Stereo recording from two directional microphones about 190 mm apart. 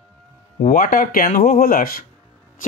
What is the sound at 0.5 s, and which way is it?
Speech, 50° left (ahead or behind).